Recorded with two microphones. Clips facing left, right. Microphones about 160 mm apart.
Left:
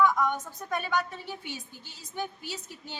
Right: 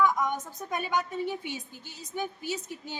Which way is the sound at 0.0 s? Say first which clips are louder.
Left 1 dB; 15° right (ahead or behind).